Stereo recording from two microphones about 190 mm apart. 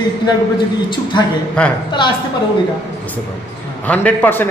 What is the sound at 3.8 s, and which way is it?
Speech, 10° left (ahead or behind).